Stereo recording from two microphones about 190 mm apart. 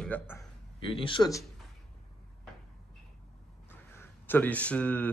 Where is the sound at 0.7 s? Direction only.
30° left (ahead or behind).